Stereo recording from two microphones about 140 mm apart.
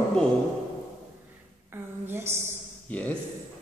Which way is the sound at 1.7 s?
15° right (ahead or behind).